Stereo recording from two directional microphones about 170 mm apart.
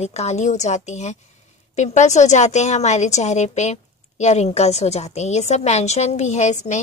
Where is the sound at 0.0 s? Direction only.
40° left (ahead or behind).